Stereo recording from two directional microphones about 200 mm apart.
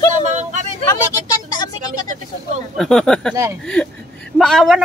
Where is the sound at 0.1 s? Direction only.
35° right (ahead or behind).